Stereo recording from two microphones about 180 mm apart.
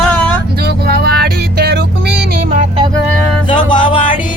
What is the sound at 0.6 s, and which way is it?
Music, 60° right (ahead or behind).